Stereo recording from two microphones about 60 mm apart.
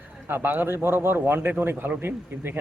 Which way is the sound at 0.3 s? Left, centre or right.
Right.